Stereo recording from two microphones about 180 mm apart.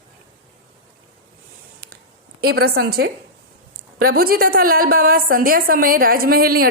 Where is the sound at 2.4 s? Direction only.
60° right (ahead or behind).